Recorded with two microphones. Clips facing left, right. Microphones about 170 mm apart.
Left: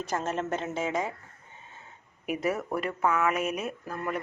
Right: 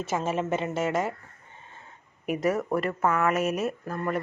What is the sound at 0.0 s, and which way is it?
Speech, 5° right (ahead or behind).